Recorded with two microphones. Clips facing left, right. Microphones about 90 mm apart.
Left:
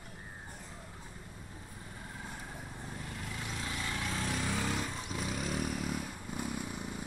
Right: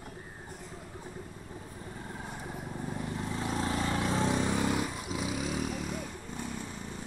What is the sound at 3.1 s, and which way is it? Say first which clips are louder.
Vehicle: right 8 dB; 30° right (ahead or behind).